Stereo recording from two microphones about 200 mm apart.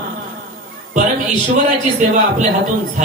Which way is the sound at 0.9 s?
40° right (ahead or behind).